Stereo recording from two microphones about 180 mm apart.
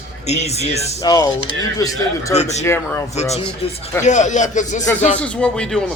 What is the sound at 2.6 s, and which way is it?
Speech, 15° left (ahead or behind).